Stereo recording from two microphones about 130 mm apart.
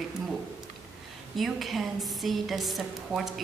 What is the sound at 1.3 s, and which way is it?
A woman's voice, centre (ahead or behind).